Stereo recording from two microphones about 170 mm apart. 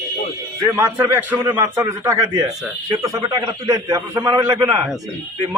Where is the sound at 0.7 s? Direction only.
15° right (ahead or behind).